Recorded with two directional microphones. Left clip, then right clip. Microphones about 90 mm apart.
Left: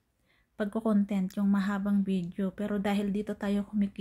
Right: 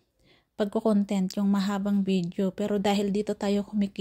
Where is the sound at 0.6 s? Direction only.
35° right (ahead or behind).